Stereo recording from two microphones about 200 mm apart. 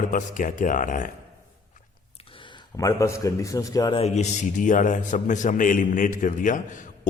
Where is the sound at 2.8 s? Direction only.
15° left (ahead or behind).